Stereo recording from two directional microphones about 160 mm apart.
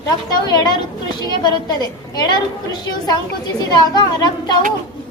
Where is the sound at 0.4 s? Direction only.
25° left (ahead or behind).